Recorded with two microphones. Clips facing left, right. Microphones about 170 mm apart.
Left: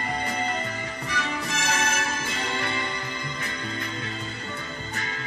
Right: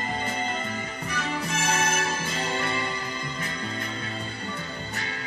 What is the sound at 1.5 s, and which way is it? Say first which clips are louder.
Music: right 1 dB; 30° right (ahead or behind).